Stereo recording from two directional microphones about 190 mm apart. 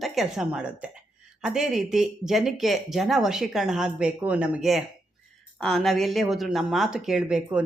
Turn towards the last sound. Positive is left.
turn(degrees=-5)  # may be behind; listen again after turning